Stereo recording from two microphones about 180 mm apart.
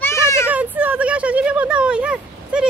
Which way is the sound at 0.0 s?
15° left (ahead or behind).